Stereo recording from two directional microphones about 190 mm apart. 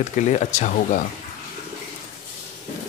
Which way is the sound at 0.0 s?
40° left (ahead or behind).